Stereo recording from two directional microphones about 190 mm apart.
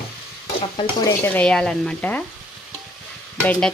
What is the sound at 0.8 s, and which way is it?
Stir, 20° left (ahead or behind).